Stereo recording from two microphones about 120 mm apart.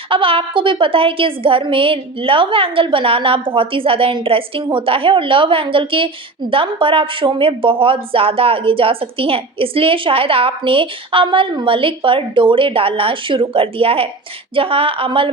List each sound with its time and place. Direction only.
0.1 s a woman's voice: 45° right (ahead or behind)